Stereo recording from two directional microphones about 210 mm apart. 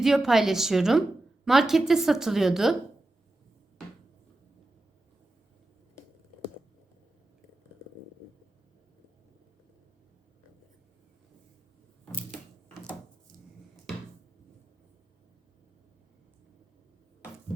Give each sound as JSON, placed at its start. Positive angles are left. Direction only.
{"t": 0.0, "sound": "a woman's voice", "side_deg": 0}